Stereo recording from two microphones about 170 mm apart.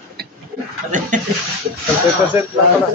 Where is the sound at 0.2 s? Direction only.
70° right (ahead or behind).